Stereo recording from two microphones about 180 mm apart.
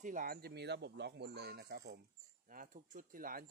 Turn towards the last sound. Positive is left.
turn(degrees=-50)  # may be behind; listen again after turning